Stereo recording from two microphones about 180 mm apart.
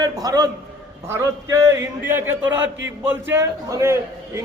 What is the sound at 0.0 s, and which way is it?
A man's voice, 20° right (ahead or behind).